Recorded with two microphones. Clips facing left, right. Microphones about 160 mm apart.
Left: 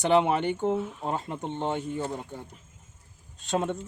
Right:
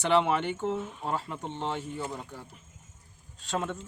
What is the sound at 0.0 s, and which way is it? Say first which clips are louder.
Speech: left 3 dB; 15° left (ahead or behind).